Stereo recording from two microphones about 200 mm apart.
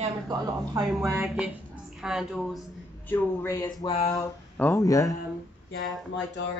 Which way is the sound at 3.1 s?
15° left (ahead or behind).